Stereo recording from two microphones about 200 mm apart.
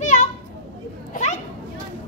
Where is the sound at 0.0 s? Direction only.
35° left (ahead or behind).